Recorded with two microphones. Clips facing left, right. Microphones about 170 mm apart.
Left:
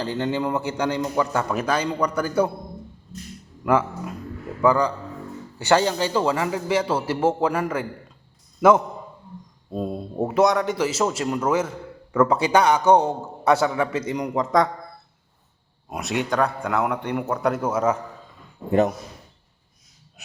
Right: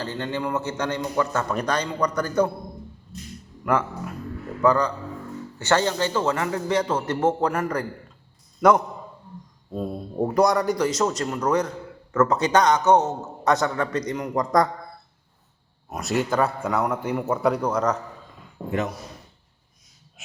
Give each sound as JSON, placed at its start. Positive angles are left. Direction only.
{"t": 0.0, "sound": "a man's voice", "side_deg": 15}
{"t": 4.6, "sound": "a man's voice", "side_deg": 10}
{"t": 9.6, "sound": "speech", "side_deg": 15}
{"t": 10.2, "sound": "a man's voice", "side_deg": 5}
{"t": 16.0, "sound": "a man's voice", "side_deg": 0}
{"t": 18.6, "sound": "a man's voice", "side_deg": -65}